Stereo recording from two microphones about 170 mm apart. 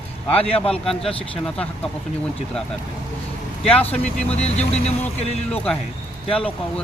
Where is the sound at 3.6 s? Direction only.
35° left (ahead or behind).